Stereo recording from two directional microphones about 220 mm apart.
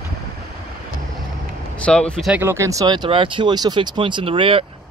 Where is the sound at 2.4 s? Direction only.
10° right (ahead or behind).